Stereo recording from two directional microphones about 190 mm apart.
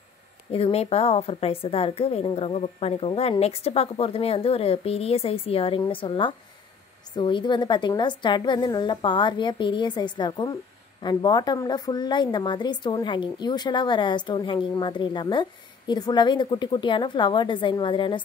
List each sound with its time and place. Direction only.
0.5 s a woman's voice: 30° left (ahead or behind)